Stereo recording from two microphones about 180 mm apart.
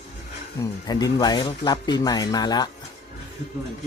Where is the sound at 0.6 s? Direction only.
20° left (ahead or behind).